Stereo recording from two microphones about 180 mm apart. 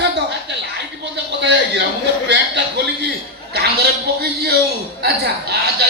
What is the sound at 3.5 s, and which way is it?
A woman's voice, 60° right (ahead or behind).